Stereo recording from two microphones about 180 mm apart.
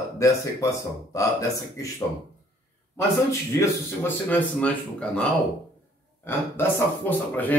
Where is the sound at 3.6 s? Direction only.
10° left (ahead or behind).